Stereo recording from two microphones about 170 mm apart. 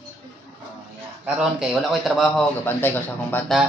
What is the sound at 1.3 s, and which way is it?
A man's voice, 5° right (ahead or behind).